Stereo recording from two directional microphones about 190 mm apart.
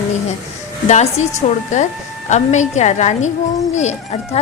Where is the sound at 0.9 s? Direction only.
35° left (ahead or behind).